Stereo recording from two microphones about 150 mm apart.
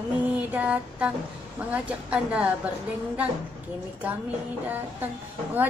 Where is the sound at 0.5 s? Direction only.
10° right (ahead or behind).